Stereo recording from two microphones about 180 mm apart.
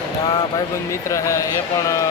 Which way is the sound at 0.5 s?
15° left (ahead or behind).